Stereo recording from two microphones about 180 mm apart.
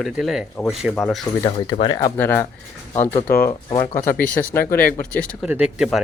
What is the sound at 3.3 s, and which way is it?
Speech, 50° left (ahead or behind).